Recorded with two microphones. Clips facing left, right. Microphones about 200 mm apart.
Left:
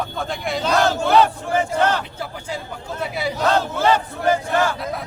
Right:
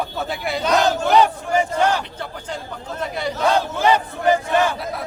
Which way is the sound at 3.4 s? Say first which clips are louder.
Right 1 dB; 15° right (ahead or behind).